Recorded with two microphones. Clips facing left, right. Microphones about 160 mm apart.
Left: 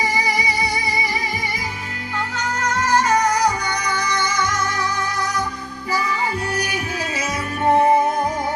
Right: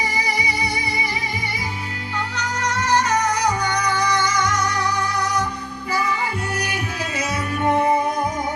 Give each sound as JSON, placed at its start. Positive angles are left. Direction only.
{"t": 7.7, "sound": "music", "side_deg": 35}